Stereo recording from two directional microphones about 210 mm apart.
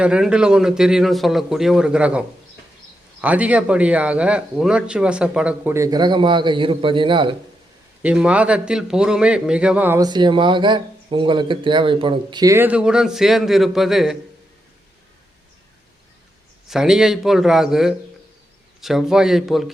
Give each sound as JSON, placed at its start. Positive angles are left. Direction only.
{"t": 0.0, "sound": "a man's voice", "side_deg": -5}
{"t": 8.0, "sound": "a man's voice", "side_deg": -5}
{"t": 16.6, "sound": "a man's voice", "side_deg": 0}